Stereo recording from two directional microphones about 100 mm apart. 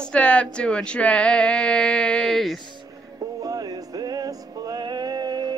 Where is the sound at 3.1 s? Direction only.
40° right (ahead or behind).